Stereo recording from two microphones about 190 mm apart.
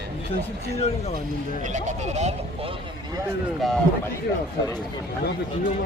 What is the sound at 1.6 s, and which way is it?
Speech, 40° right (ahead or behind).